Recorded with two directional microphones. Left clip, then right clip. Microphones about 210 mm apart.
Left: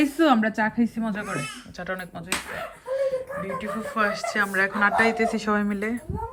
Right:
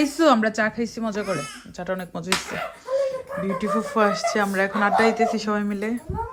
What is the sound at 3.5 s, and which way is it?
Speech, 20° right (ahead or behind).